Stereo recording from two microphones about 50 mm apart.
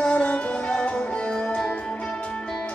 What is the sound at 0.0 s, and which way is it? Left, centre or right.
Music, left.